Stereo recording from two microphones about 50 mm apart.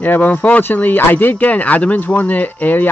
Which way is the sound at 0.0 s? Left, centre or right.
Left.